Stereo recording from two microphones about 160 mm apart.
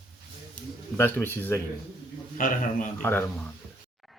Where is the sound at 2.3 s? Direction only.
55° left (ahead or behind).